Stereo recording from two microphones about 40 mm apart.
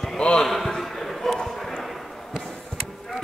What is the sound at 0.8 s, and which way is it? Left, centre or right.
Basketball bounce, centre.